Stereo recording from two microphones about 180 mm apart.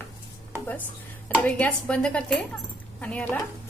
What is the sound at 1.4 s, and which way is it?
A woman's voice, 5° left (ahead or behind).